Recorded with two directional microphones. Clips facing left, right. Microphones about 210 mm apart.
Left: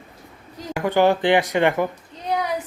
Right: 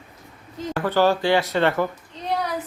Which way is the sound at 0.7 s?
15° left (ahead or behind).